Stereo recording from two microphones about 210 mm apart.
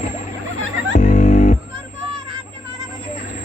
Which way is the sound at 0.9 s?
35° left (ahead or behind).